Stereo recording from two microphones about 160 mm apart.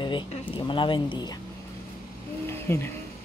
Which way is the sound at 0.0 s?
30° left (ahead or behind).